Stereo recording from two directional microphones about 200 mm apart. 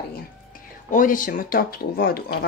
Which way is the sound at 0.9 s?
40° left (ahead or behind).